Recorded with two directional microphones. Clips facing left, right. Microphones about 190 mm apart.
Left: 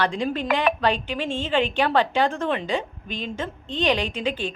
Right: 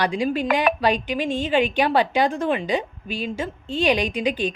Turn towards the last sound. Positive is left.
turn(degrees=-15)  # may be behind; listen again after turning